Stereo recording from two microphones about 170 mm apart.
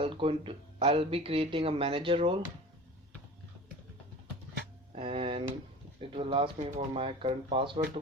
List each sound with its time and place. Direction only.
0.0 s speech: 30° right (ahead or behind)
4.9 s speech: 30° right (ahead or behind)